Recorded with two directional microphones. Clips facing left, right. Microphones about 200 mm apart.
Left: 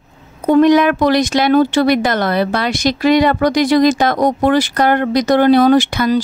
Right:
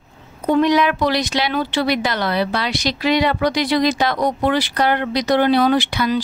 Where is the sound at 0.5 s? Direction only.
50° left (ahead or behind).